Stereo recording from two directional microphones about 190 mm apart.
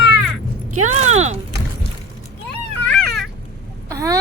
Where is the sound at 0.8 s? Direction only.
40° right (ahead or behind).